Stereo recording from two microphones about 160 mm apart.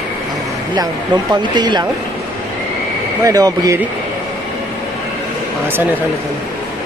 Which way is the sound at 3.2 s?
20° right (ahead or behind).